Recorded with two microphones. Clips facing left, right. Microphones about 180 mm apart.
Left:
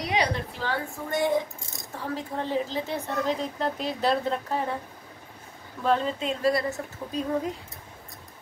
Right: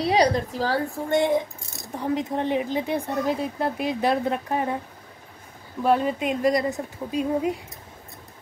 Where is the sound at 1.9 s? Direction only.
20° right (ahead or behind).